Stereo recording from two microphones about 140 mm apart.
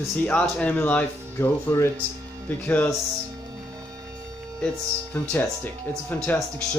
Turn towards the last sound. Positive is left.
turn(degrees=10)  # may be behind; listen again after turning